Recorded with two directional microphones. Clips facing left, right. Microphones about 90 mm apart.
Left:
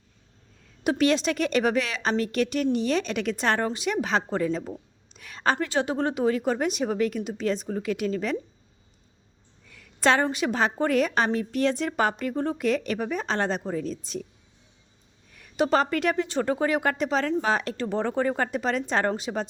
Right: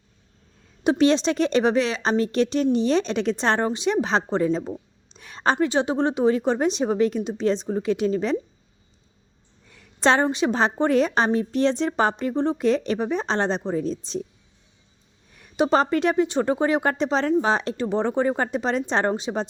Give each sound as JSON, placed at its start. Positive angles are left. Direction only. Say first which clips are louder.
{"t": 0.9, "sound": "a woman's voice", "louder": "right 4 dB", "side_deg": -25}
{"t": 9.6, "sound": "a sound", "louder": "right 2 dB", "side_deg": -25}
{"t": 10.2, "sound": "a woman's voice", "louder": "right 3 dB", "side_deg": -25}
{"t": 15.3, "sound": "a woman's voice", "louder": "right 3 dB", "side_deg": -25}